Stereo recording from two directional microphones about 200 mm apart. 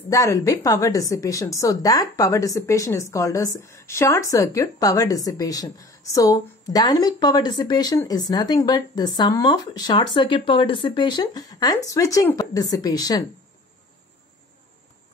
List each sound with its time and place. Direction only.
0.1 s a woman's voice: 15° left (ahead or behind)